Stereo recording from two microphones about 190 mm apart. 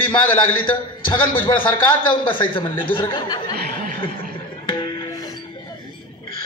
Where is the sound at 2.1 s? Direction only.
25° left (ahead or behind).